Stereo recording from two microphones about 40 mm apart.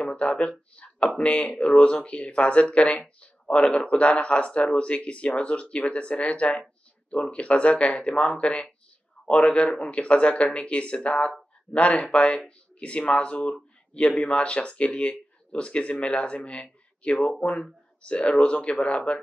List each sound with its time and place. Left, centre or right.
0.0 s speech: left